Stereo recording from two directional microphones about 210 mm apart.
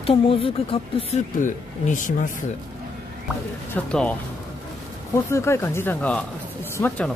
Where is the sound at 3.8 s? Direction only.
5° left (ahead or behind).